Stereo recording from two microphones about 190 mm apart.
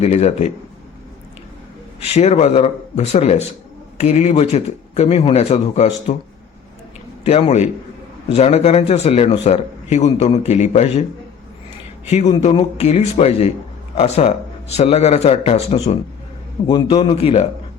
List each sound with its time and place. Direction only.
0.0 s speech: 35° left (ahead or behind)
2.1 s speech: 35° left (ahead or behind)
7.3 s speech: 35° left (ahead or behind)
12.3 s a man's voice: 30° left (ahead or behind)